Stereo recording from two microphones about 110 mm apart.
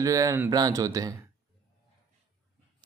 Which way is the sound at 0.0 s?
30° right (ahead or behind).